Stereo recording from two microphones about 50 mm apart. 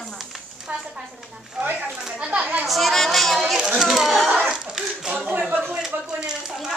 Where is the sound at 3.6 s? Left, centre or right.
Centre.